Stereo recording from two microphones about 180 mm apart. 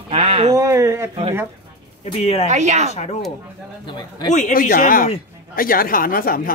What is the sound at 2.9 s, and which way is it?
Speech, 35° left (ahead or behind).